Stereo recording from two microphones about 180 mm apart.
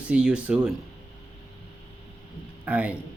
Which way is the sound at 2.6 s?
10° right (ahead or behind).